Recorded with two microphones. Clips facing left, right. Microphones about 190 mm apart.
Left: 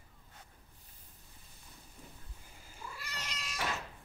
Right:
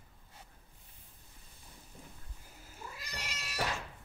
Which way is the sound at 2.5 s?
5° right (ahead or behind).